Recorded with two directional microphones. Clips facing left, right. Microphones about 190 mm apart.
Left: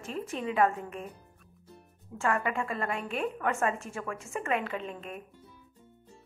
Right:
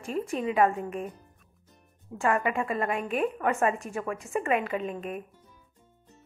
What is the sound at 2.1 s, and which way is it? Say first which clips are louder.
A woman's voice: right 3 dB; 15° right (ahead or behind).